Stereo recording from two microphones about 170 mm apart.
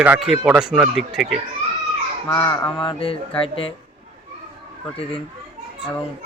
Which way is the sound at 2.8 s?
35° left (ahead or behind).